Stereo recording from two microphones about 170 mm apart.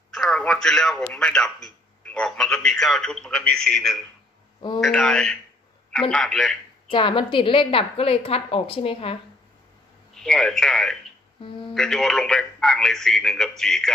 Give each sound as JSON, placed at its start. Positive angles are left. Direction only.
{"t": 0.1, "sound": "a man's voice", "side_deg": 5}
{"t": 6.9, "sound": "a woman's voice", "side_deg": 30}
{"t": 10.1, "sound": "a man's voice", "side_deg": 5}